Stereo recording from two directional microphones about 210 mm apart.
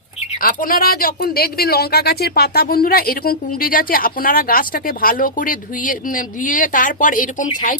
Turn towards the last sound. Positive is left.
turn(degrees=40)  # may be behind; listen again after turning